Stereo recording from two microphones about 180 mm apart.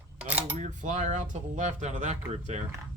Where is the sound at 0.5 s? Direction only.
40° right (ahead or behind).